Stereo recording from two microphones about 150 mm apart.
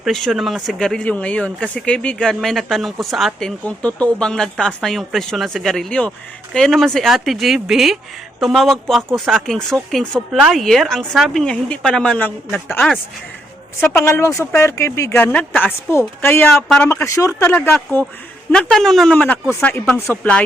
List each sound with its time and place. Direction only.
0.0 s speech: centre (ahead or behind)
14.0 s speech: 20° left (ahead or behind)
16.9 s speech: 20° left (ahead or behind)
17.7 s speech: 5° left (ahead or behind)